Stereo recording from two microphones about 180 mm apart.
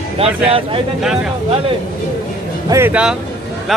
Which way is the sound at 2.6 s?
15° right (ahead or behind).